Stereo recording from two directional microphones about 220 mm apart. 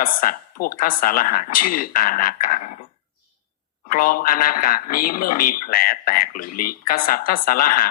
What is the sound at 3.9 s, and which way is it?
Speech, 40° left (ahead or behind).